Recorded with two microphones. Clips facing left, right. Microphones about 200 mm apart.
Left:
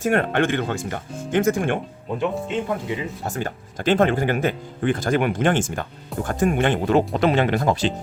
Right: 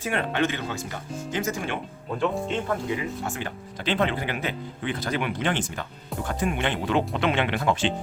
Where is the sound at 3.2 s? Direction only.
40° left (ahead or behind).